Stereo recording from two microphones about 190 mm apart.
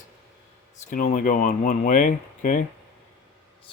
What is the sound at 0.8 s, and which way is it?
Speech, 45° left (ahead or behind).